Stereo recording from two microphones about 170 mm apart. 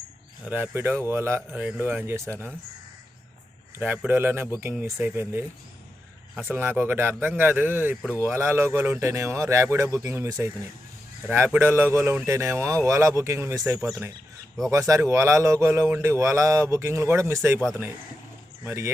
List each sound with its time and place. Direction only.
0.4 s speech: 10° right (ahead or behind)
3.8 s speech: 10° right (ahead or behind)
18.6 s speech: 15° right (ahead or behind)